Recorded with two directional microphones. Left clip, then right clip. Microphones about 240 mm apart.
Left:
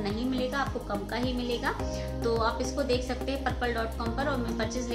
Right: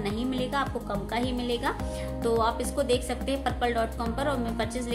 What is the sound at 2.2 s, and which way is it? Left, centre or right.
Speech, right.